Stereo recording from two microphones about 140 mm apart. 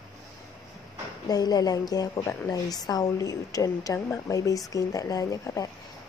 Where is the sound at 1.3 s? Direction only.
25° left (ahead or behind).